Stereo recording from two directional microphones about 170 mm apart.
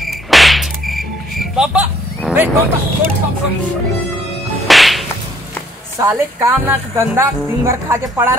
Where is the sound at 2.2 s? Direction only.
10° right (ahead or behind).